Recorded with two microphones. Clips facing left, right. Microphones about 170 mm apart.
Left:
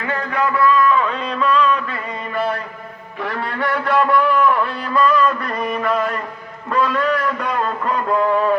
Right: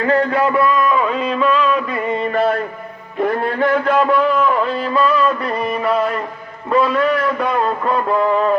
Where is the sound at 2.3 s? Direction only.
45° right (ahead or behind).